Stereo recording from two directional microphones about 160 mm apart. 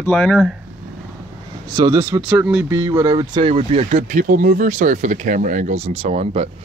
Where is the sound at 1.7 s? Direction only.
20° right (ahead or behind).